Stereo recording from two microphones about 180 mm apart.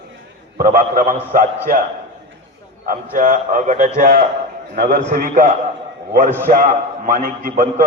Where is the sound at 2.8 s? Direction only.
50° right (ahead or behind).